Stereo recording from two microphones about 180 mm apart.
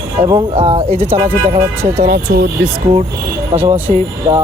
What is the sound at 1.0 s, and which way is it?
Speech, 10° right (ahead or behind).